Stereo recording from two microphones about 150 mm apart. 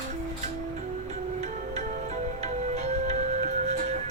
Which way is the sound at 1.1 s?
45° right (ahead or behind).